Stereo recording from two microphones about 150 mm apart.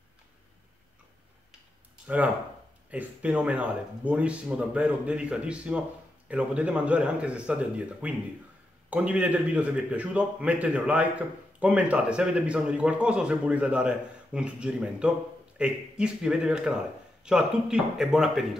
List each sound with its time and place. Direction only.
2.0 s a man's voice: 10° right (ahead or behind)